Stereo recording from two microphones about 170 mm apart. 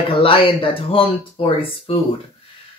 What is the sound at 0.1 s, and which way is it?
Speech, 35° left (ahead or behind).